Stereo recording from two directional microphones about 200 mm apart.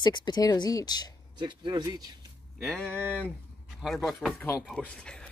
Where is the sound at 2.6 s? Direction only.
5° left (ahead or behind).